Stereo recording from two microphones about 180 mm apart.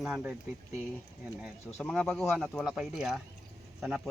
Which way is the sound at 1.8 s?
Centre (ahead or behind).